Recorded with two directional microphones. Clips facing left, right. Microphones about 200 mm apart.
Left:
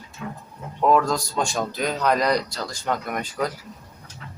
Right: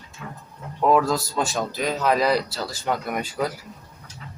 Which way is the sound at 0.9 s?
5° right (ahead or behind).